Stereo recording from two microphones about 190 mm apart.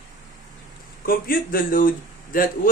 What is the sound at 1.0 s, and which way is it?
Speech, 50° left (ahead or behind).